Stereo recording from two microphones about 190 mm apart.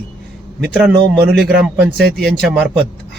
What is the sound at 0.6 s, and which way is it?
Speech, centre (ahead or behind).